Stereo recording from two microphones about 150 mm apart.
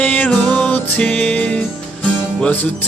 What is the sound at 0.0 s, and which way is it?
Music, 10° left (ahead or behind).